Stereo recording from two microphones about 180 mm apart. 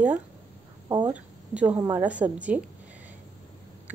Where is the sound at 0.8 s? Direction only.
25° right (ahead or behind).